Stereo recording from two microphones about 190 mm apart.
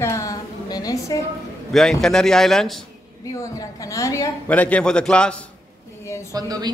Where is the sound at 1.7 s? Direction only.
Centre (ahead or behind).